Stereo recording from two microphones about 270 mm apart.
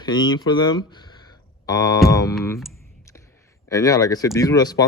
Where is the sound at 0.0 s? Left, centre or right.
Centre.